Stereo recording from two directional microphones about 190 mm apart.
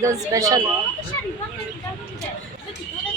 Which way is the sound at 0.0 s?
15° right (ahead or behind).